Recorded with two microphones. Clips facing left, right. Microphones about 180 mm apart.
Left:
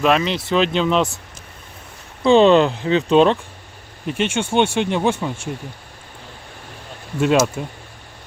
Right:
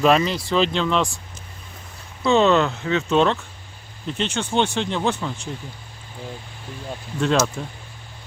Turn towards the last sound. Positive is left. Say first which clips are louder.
# left 4 dB
turn(degrees=10)  # may be behind; listen again after turning